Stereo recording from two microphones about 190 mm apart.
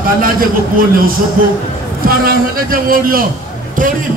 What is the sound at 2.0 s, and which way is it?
Speech, 50° right (ahead or behind).